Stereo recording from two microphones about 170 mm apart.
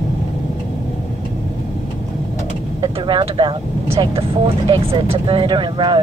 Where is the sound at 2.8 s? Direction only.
30° right (ahead or behind).